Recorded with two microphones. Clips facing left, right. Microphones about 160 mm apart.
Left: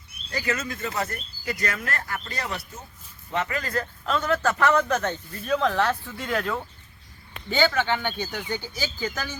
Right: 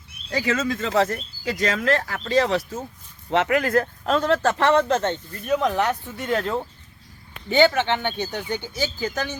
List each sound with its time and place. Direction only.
0.3 s speech: 90° right
3.2 s speech: 75° right (ahead or behind); by 9.4 s 20° right (ahead or behind)